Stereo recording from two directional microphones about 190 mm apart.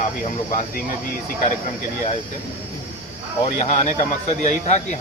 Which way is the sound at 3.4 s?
35° left (ahead or behind).